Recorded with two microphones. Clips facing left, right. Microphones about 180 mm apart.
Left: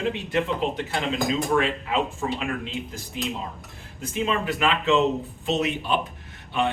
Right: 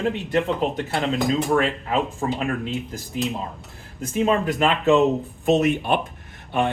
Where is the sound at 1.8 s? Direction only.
40° right (ahead or behind).